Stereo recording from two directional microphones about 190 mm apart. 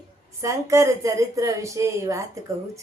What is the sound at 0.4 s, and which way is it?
Speech, 15° right (ahead or behind).